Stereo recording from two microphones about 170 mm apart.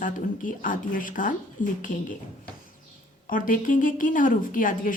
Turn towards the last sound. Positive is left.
turn(degrees=50)  # may be behind; listen again after turning